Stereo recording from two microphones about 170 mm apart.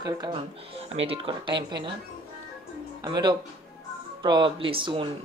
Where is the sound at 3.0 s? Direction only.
25° right (ahead or behind).